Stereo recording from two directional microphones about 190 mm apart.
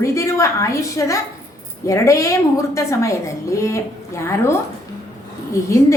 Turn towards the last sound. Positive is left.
turn(degrees=15)  # may be behind; listen again after turning